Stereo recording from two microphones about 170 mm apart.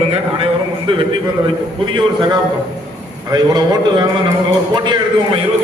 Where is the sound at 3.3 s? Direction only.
25° right (ahead or behind).